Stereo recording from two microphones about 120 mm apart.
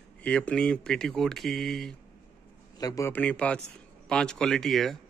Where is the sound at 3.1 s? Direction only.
10° left (ahead or behind).